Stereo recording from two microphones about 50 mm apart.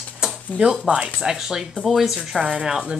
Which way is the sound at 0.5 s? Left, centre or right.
Centre.